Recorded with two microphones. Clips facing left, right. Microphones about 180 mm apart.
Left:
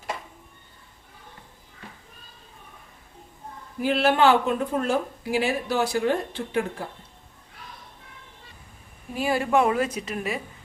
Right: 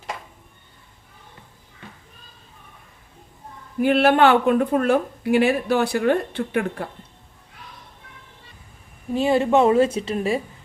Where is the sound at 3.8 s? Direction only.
60° right (ahead or behind).